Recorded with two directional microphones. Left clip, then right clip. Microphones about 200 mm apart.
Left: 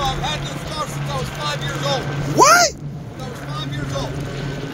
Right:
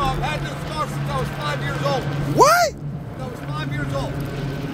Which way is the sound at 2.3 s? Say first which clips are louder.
Left 2 dB; 5° right (ahead or behind).